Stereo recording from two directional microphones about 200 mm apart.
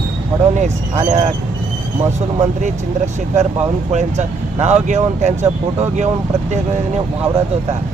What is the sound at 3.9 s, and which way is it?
Speech, 35° right (ahead or behind).